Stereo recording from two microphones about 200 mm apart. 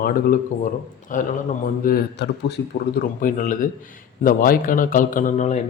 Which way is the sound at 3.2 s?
40° left (ahead or behind).